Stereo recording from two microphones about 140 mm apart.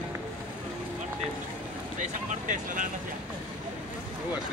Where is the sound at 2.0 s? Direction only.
65° right (ahead or behind).